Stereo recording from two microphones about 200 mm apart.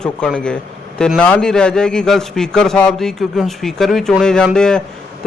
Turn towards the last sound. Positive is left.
turn(degrees=5)  # may be behind; listen again after turning